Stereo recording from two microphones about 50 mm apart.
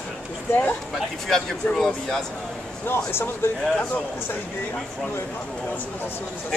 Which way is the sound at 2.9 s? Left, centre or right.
Left.